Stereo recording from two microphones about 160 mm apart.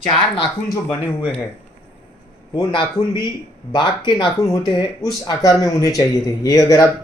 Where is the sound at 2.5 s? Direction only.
30° left (ahead or behind).